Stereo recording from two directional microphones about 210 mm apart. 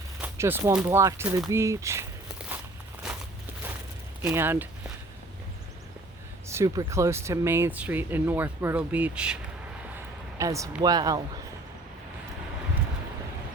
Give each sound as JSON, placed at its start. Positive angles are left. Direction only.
{"t": 0.2, "sound": "speech", "side_deg": -10}
{"t": 2.4, "sound": "walk", "side_deg": -5}
{"t": 3.1, "sound": "a sound", "side_deg": 0}
{"t": 4.2, "sound": "speech", "side_deg": -10}
{"t": 6.5, "sound": "speech", "side_deg": -15}